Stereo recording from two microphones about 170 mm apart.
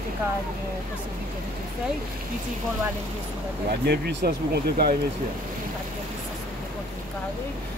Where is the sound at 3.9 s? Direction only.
75° right (ahead or behind).